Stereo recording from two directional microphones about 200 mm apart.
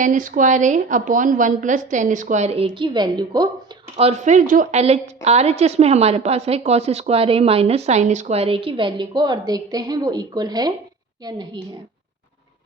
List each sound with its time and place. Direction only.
0.0 s a woman's voice: 40° right (ahead or behind); by 3.5 s 20° right (ahead or behind)
3.9 s a woman's voice: 30° right (ahead or behind)